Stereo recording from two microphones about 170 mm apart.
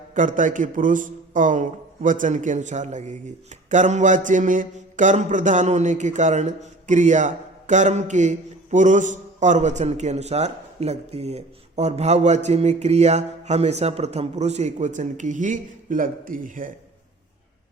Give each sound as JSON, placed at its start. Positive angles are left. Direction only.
{"t": 0.1, "sound": "a man's voice", "side_deg": -50}